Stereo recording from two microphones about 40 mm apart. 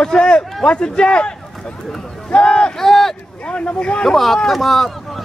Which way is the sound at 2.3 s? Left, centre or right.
Left.